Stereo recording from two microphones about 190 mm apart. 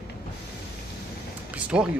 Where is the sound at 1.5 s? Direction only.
5° right (ahead or behind).